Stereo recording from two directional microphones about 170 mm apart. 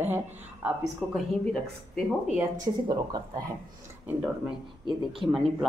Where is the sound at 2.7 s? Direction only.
25° right (ahead or behind).